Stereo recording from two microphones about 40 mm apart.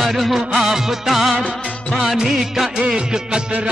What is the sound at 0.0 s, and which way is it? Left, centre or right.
Music, centre.